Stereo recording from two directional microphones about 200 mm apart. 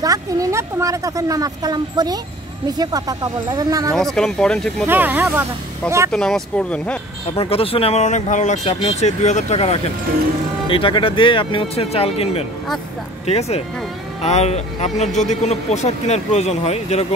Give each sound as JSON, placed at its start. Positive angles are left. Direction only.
{"t": 0.0, "sound": "speech", "side_deg": -15}
{"t": 3.9, "sound": "speech", "side_deg": 0}
{"t": 4.8, "sound": "speech", "side_deg": -10}
{"t": 6.1, "sound": "speech", "side_deg": 5}
{"t": 7.3, "sound": "speech", "side_deg": 30}